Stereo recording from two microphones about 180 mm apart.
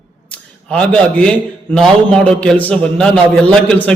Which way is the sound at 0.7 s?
5° left (ahead or behind).